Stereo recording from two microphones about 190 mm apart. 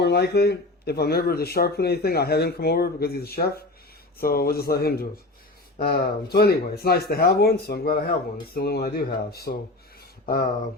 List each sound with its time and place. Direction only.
0.0 s speech: 60° left (ahead or behind)